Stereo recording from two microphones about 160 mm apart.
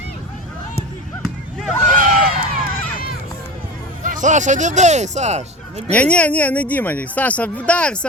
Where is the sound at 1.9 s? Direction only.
55° right (ahead or behind).